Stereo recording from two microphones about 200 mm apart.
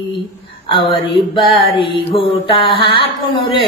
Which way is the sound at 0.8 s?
25° left (ahead or behind).